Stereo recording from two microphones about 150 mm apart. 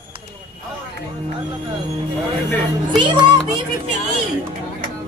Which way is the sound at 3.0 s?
30° right (ahead or behind).